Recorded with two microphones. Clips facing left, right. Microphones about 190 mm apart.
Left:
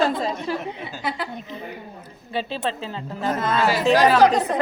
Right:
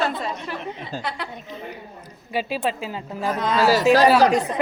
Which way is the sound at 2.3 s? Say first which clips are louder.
Right 2 dB; 10° right (ahead or behind).